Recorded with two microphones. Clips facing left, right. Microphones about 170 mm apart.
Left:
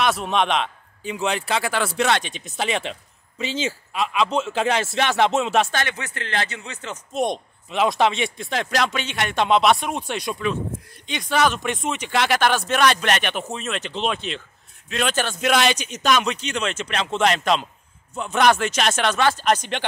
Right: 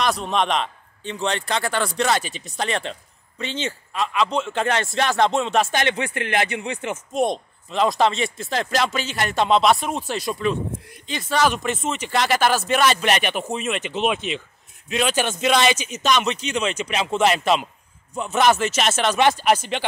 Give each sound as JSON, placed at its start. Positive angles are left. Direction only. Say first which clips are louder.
{"t": 0.0, "sound": "a man's voice", "louder": "left 1 dB", "side_deg": 0}
{"t": 5.7, "sound": "speech", "louder": "right 4 dB", "side_deg": -20}
{"t": 7.2, "sound": "speech", "louder": "right 1 dB", "side_deg": 0}
{"t": 19.1, "sound": "speech", "louder": "right 2 dB", "side_deg": -20}
{"t": 19.4, "sound": "speech", "louder": "right 1 dB", "side_deg": -5}